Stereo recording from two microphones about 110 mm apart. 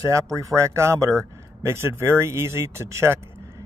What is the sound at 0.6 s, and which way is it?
Speech, 25° right (ahead or behind).